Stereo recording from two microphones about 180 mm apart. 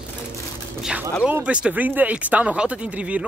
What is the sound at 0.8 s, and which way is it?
Speech, 5° right (ahead or behind).